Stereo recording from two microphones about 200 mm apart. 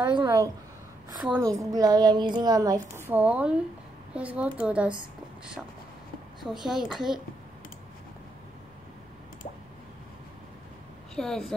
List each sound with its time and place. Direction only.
0.0 s a woman's voice: 20° right (ahead or behind)
1.2 s a woman's voice: 10° right (ahead or behind)
3.1 s a woman's voice: 10° right (ahead or behind)
6.4 s a woman's voice: centre (ahead or behind)
11.1 s a woman's voice: centre (ahead or behind)